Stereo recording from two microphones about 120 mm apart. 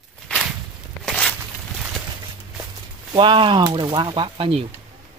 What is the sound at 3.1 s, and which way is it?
Speech, 45° right (ahead or behind).